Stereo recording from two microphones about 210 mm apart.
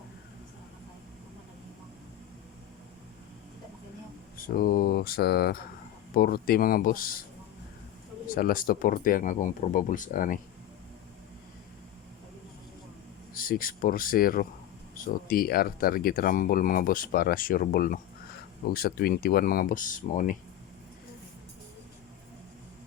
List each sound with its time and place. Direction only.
4.4 s speech: 40° left (ahead or behind)
8.3 s speech: 45° left (ahead or behind)
13.3 s speech: 45° left (ahead or behind)